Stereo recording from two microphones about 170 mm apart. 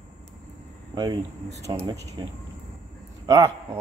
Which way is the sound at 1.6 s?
20° right (ahead or behind).